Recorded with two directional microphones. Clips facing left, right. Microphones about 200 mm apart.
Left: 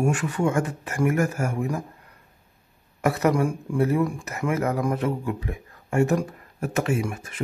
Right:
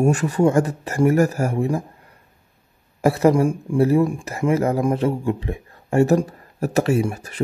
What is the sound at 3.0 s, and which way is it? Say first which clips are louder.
Speech: right 5 dB; 30° right (ahead or behind).